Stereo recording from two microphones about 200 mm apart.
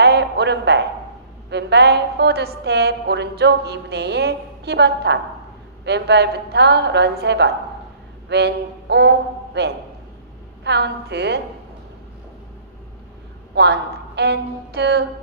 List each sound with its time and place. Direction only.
0.0 s music: 55° right (ahead or behind)
1.5 s a woman's voice: 60° right (ahead or behind)
13.6 s a woman's voice: 55° right (ahead or behind)